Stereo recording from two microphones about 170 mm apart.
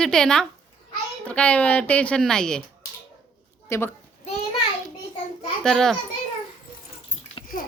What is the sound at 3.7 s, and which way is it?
Speech, 15° left (ahead or behind).